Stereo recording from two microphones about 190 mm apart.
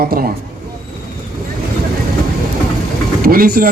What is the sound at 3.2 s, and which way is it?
Speech, 50° right (ahead or behind).